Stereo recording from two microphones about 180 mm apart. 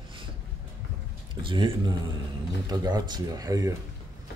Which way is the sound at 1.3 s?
25° right (ahead or behind).